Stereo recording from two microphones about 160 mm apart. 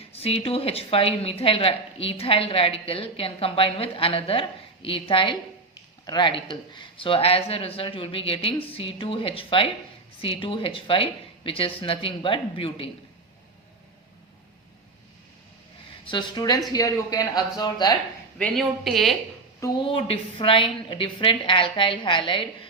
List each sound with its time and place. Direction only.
0.1 s a woman's voice: 40° left (ahead or behind)
16.0 s speech: 30° left (ahead or behind)
18.3 s a woman's voice: 5° left (ahead or behind)
19.8 s a woman's voice: 35° left (ahead or behind)